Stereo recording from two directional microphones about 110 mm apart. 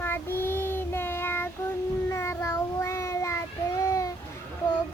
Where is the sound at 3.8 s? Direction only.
30° left (ahead or behind).